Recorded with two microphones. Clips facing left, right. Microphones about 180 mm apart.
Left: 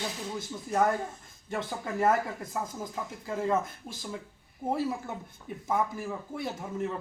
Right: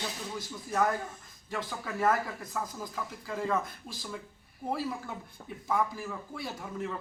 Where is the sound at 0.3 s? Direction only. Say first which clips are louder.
Left 2 dB; 25° left (ahead or behind).